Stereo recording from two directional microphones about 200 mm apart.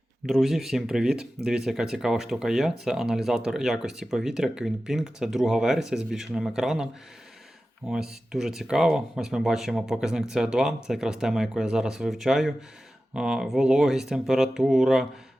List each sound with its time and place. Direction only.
0.3 s speech: centre (ahead or behind)
7.9 s speech: 5° right (ahead or behind)